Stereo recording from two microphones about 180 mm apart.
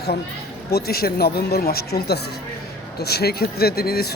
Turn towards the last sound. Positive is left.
turn(degrees=60)  # may be behind; listen again after turning